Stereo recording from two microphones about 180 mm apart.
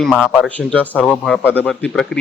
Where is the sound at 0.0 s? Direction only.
Centre (ahead or behind).